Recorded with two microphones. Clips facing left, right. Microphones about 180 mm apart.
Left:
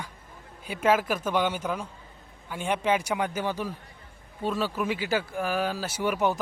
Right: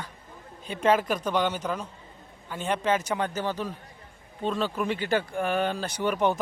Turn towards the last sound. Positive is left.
turn(degrees=5)  # may be behind; listen again after turning